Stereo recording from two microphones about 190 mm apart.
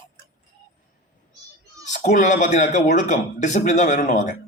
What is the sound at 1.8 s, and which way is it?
A man's voice, 40° left (ahead or behind).